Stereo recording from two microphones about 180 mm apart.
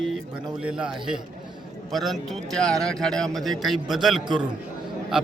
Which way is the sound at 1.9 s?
Centre (ahead or behind).